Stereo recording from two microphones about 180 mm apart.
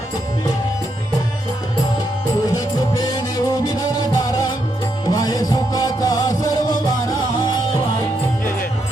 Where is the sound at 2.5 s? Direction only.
20° left (ahead or behind).